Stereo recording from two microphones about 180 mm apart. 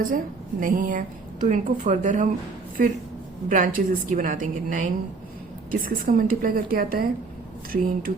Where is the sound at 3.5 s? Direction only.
50° right (ahead or behind).